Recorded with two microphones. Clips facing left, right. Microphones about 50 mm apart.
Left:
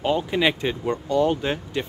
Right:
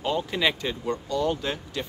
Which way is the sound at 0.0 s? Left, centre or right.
Centre.